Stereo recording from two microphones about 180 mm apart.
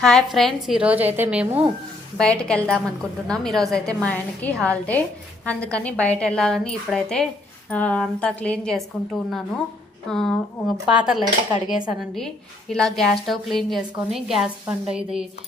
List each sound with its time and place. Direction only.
0.0 s a woman's voice: centre (ahead or behind)
2.1 s a woman's voice: 5° left (ahead or behind)